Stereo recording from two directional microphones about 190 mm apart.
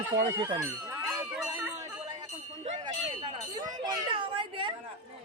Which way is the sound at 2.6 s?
30° right (ahead or behind).